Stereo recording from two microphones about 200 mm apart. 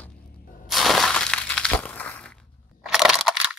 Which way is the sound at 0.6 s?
Centre (ahead or behind).